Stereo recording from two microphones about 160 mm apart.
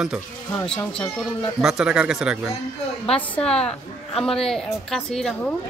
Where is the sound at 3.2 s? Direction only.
5° left (ahead or behind).